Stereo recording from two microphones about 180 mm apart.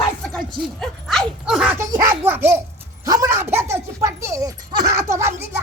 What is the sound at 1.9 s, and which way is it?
Dog, 15° right (ahead or behind).